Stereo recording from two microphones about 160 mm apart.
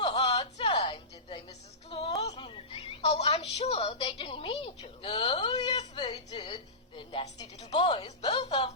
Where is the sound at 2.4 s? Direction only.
40° left (ahead or behind).